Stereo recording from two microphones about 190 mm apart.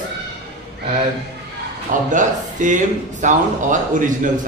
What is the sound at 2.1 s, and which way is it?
A man's voice, 40° right (ahead or behind).